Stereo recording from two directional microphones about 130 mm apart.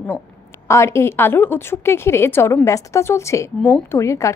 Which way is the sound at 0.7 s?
20° left (ahead or behind).